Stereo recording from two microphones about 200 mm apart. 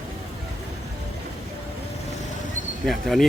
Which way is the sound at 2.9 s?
Centre (ahead or behind).